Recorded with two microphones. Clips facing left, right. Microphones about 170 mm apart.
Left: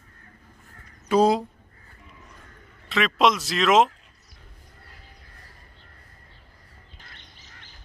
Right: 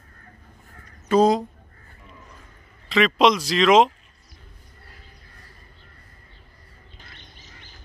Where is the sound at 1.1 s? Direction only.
10° left (ahead or behind).